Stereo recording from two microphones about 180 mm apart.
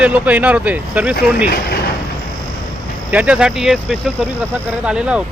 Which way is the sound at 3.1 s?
5° right (ahead or behind).